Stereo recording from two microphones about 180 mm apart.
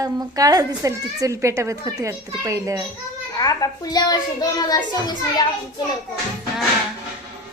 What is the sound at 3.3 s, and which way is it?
A child's voice, 20° left (ahead or behind).